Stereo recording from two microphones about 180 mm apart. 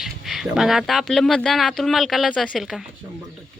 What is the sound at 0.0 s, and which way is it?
Speech, centre (ahead or behind).